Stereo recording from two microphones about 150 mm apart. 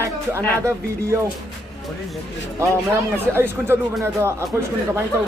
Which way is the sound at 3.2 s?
15° right (ahead or behind).